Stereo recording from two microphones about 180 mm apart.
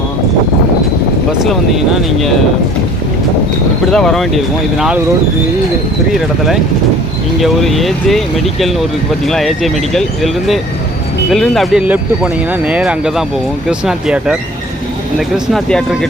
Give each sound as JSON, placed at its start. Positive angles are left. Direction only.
{"t": 3.9, "sound": "speech", "side_deg": 0}
{"t": 7.4, "sound": "speech", "side_deg": 0}
{"t": 15.5, "sound": "speech", "side_deg": 0}